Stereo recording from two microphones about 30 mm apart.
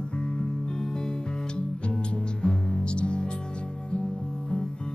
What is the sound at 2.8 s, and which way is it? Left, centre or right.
Music, left.